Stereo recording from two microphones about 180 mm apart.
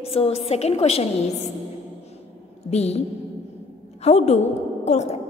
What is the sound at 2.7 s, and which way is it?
A woman's voice, 35° left (ahead or behind).